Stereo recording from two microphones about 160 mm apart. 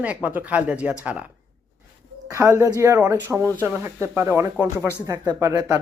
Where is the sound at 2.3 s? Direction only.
20° right (ahead or behind).